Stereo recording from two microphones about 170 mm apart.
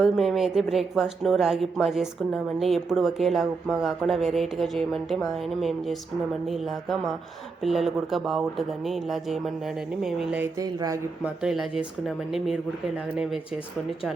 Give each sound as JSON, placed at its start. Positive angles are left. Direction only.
{"t": 0.0, "sound": "speech", "side_deg": 0}
{"t": 10.4, "sound": "speech", "side_deg": -20}
{"t": 11.4, "sound": "speech", "side_deg": 0}